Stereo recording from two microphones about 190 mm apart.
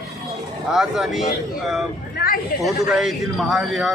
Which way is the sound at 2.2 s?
50° left (ahead or behind).